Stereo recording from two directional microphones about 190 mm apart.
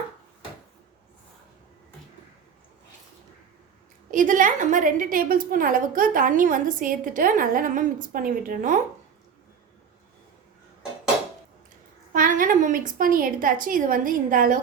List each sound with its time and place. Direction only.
4.1 s a woman's voice: 45° right (ahead or behind)
12.1 s a woman's voice: 45° right (ahead or behind)